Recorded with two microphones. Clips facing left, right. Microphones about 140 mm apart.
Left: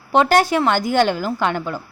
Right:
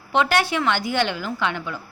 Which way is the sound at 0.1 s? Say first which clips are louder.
Left 5 dB; 40° left (ahead or behind).